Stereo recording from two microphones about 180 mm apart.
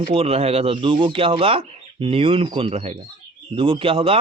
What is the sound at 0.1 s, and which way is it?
Speech, 30° right (ahead or behind).